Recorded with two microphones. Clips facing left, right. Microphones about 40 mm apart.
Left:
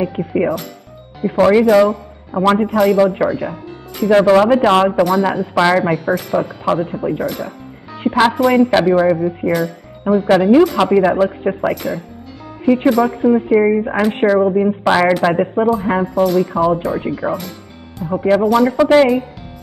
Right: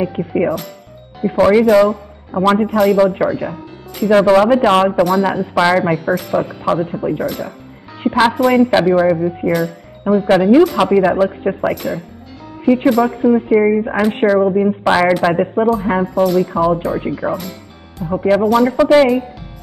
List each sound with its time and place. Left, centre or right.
0.0 s speech: centre
12.4 s music: centre
13.2 s speech: centre